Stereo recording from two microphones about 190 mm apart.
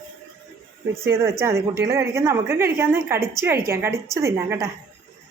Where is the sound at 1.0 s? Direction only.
15° right (ahead or behind).